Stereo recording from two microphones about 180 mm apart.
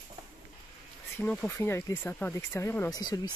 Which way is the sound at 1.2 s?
10° left (ahead or behind).